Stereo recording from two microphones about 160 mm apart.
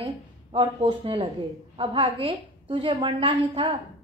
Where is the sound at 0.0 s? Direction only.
30° right (ahead or behind).